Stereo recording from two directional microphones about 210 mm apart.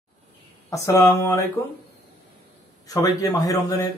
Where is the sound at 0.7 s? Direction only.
15° left (ahead or behind).